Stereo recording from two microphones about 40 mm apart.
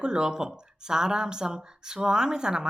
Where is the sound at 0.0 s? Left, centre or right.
Centre.